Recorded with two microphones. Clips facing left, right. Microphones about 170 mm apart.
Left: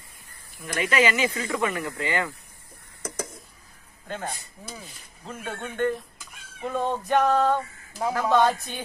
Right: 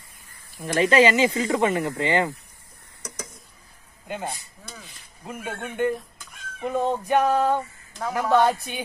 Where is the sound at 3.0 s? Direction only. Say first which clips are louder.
Left 5 dB; 50° left (ahead or behind).